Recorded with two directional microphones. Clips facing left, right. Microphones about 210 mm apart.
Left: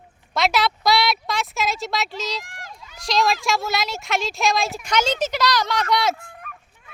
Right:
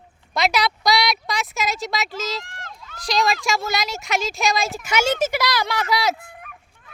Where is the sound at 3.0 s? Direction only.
Centre (ahead or behind).